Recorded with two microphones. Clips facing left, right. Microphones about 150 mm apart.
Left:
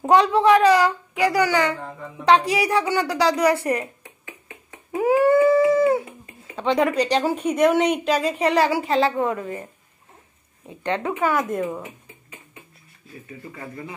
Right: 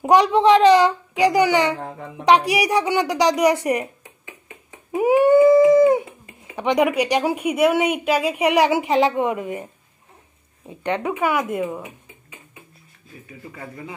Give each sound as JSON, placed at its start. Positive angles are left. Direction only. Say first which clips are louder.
{"t": 0.0, "sound": "a child's voice", "louder": "right 2 dB", "side_deg": -15}
{"t": 1.8, "sound": "a child's voice", "louder": "right 3 dB", "side_deg": -65}
{"t": 2.2, "sound": "speech", "louder": "right 1 dB", "side_deg": -15}
{"t": 4.6, "sound": "dog", "louder": "right 2 dB", "side_deg": -15}
{"t": 10.7, "sound": "speech", "louder": "right 1 dB", "side_deg": -15}